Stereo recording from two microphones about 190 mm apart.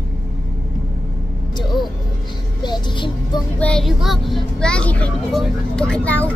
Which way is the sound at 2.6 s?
25° left (ahead or behind).